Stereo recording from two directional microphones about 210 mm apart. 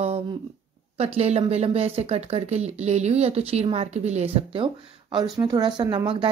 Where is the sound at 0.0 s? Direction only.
30° right (ahead or behind).